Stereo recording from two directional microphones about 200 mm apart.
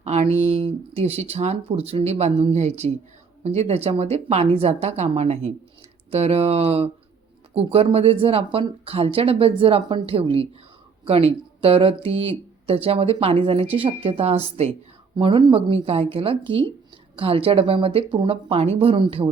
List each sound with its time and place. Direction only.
0.0 s speech: 35° right (ahead or behind)